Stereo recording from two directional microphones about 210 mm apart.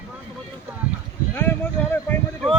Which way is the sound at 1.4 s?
10° left (ahead or behind).